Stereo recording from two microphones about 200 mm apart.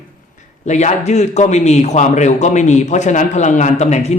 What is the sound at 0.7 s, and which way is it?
A man's voice, 35° left (ahead or behind).